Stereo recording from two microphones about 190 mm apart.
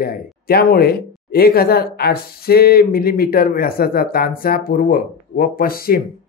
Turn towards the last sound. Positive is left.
turn(degrees=50)  # may be behind; listen again after turning